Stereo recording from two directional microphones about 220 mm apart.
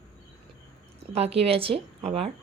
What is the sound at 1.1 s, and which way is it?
Speech, 25° right (ahead or behind).